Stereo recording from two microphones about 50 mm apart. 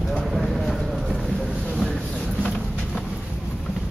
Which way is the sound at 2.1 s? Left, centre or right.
Left.